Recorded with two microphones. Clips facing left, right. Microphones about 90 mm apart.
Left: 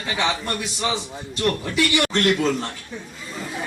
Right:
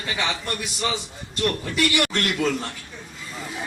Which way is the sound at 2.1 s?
25° left (ahead or behind).